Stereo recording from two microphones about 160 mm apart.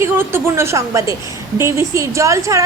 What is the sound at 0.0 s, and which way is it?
A woman's voice, 15° right (ahead or behind).